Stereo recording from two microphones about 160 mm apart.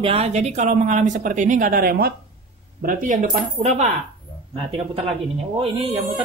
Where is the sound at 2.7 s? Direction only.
60° right (ahead or behind).